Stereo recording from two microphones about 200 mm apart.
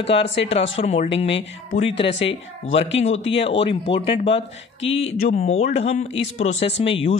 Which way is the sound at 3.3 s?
30° left (ahead or behind).